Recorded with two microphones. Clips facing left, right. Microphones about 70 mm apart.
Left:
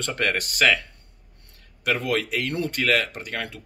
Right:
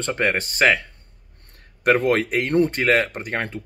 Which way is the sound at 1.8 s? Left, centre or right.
Right.